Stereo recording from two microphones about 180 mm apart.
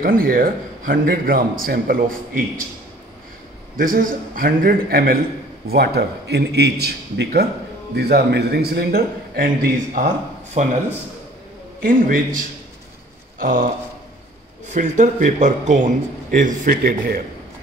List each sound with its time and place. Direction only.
0.0 s a man's voice: 55° right (ahead or behind)
3.7 s a man's voice: 50° right (ahead or behind)
10.6 s speech: 40° right (ahead or behind)
11.8 s a man's voice: 50° right (ahead or behind)
13.4 s a sound: 50° right (ahead or behind)
14.7 s a man's voice: 45° right (ahead or behind)